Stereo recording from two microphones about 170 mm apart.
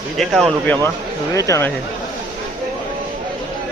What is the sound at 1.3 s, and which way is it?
Speech, 20° left (ahead or behind).